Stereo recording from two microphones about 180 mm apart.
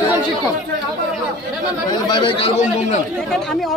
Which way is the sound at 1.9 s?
25° left (ahead or behind).